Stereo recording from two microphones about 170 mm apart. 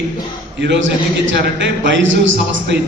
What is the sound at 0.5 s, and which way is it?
A man's voice, 90° right.